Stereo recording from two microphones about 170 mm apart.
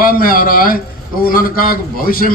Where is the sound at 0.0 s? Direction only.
60° left (ahead or behind).